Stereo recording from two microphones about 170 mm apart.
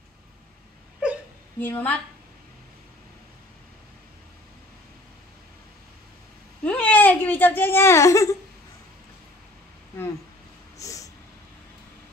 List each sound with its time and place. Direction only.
1.0 s whimper: 5° right (ahead or behind)
1.6 s a woman's voice: 10° left (ahead or behind)
6.6 s whimper: 10° left (ahead or behind)
10.8 s a sound: 20° left (ahead or behind)